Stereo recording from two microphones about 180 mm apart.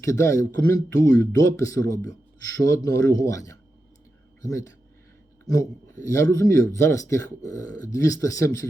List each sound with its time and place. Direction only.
0.0 s speech: 15° left (ahead or behind)